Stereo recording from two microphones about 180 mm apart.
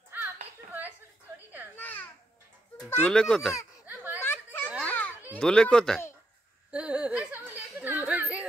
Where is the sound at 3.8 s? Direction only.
10° right (ahead or behind).